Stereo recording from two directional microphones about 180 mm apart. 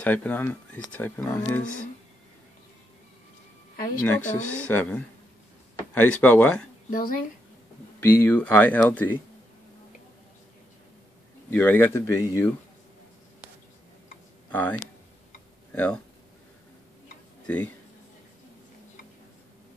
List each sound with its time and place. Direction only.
0.0 s speech: 10° left (ahead or behind)
4.0 s speech: 10° left (ahead or behind)
6.9 s speech: 50° left (ahead or behind)
8.0 s speech: 10° left (ahead or behind)
11.5 s speech: 10° left (ahead or behind)
14.5 s speech: 10° left (ahead or behind)